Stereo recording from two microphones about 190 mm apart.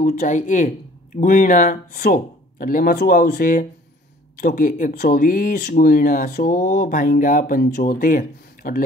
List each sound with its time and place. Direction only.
0.0 s speech: 40° left (ahead or behind)